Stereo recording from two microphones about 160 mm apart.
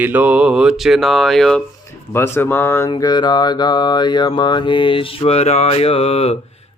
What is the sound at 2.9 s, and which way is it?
Mantra, 25° left (ahead or behind).